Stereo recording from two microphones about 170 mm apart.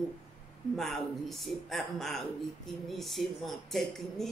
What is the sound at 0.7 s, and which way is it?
Speech, centre (ahead or behind).